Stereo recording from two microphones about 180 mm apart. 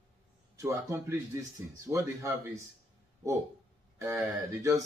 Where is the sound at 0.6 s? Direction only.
15° right (ahead or behind).